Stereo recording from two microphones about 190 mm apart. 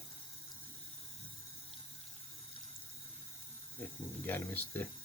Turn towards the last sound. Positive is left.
turn(degrees=10)  # may be behind; listen again after turning